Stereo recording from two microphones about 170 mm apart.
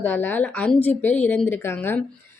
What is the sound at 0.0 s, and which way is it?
A woman's voice, 10° left (ahead or behind).